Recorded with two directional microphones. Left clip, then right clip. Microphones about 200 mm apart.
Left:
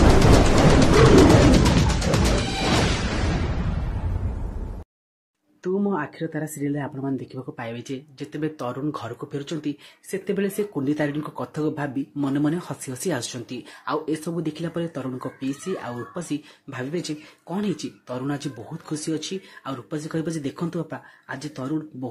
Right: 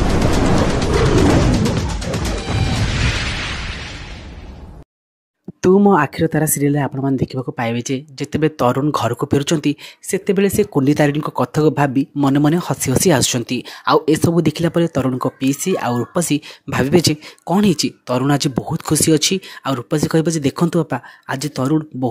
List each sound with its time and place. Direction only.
0.0 s music: centre (ahead or behind)
5.6 s speech: 50° right (ahead or behind)